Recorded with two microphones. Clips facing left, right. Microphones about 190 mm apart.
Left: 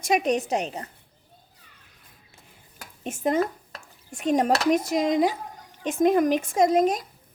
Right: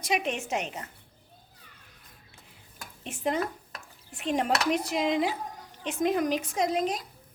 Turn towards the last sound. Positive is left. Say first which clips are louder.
# left 7 dB
turn(degrees=45)  # may be behind; listen again after turning